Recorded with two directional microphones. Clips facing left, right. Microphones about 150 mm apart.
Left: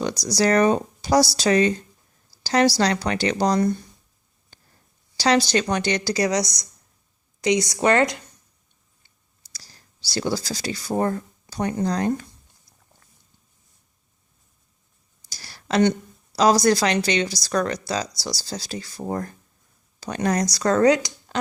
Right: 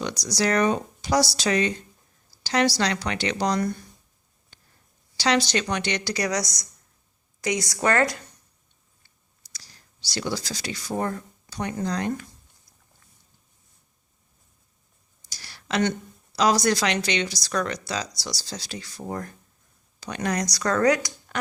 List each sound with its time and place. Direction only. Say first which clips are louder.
0.2 s speech: left 4 dB; 35° left (ahead or behind)
4.5 s a sound: left 3 dB; 35° left (ahead or behind)
5.1 s a woman's voice: left 4 dB; 35° left (ahead or behind); by 8.2 s 20° left (ahead or behind)
10.1 s speech: left 4 dB; 35° left (ahead or behind)
15.3 s a sound: left 4 dB; 40° left (ahead or behind)
16.3 s speech: left 4 dB; 35° left (ahead or behind)